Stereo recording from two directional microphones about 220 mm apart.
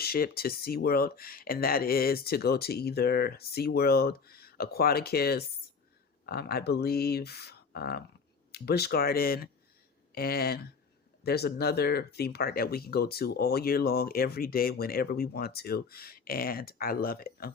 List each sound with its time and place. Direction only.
0.0 s speech: 45° left (ahead or behind)